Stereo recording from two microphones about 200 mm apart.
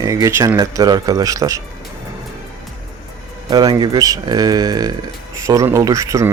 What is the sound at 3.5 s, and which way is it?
Speech, 20° right (ahead or behind).